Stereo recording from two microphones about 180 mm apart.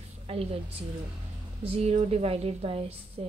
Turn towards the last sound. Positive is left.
turn(degrees=-35)  # may be behind; listen again after turning